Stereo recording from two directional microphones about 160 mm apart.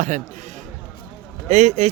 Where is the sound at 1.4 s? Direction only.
45° right (ahead or behind).